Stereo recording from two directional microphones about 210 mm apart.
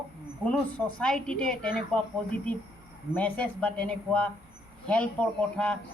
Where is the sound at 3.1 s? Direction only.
5° left (ahead or behind).